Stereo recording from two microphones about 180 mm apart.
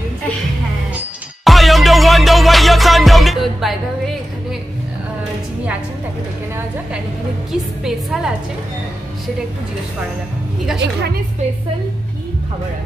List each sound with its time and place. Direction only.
1.4 s music: centre (ahead or behind)
7.8 s a woman's voice: 5° right (ahead or behind)
10.8 s a woman's voice: 75° right (ahead or behind)